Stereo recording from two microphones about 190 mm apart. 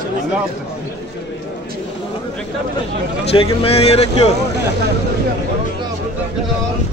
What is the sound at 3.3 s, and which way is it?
Speech, 30° left (ahead or behind).